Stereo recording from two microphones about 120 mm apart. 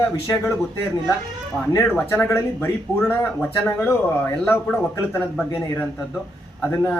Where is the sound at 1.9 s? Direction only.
15° left (ahead or behind).